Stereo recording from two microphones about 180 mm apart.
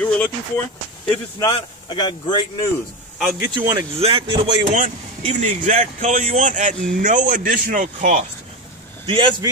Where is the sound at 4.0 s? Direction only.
30° right (ahead or behind).